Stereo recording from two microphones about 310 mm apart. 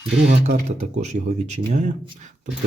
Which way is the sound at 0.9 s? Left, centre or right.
Right.